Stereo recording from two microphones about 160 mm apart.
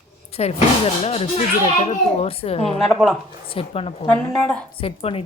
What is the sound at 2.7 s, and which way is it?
Speech, centre (ahead or behind).